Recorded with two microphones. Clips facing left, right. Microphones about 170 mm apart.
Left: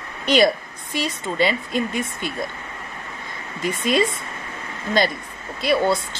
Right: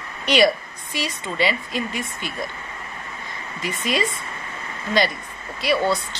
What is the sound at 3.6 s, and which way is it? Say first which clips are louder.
Speech: left 4 dB; 50° left (ahead or behind).